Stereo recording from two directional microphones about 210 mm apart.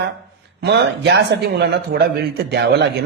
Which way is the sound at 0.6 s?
55° right (ahead or behind).